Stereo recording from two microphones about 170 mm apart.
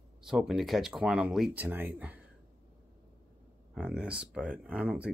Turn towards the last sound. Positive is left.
turn(degrees=-5)  # may be behind; listen again after turning